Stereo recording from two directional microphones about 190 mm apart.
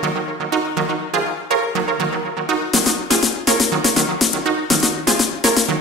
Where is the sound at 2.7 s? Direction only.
Centre (ahead or behind).